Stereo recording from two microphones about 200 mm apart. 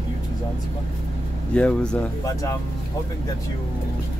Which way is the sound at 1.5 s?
5° left (ahead or behind).